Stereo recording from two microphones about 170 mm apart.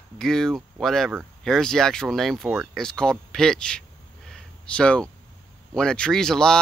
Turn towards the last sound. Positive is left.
turn(degrees=5)  # may be behind; listen again after turning